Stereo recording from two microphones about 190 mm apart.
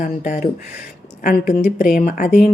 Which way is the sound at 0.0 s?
40° left (ahead or behind).